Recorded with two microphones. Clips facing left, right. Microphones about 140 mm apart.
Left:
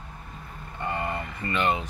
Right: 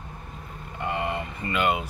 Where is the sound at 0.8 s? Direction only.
15° right (ahead or behind).